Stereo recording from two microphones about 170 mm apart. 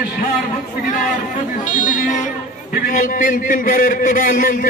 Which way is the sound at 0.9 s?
50° left (ahead or behind).